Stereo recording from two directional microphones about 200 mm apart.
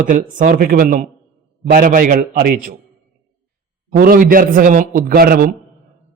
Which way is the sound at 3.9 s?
45° right (ahead or behind).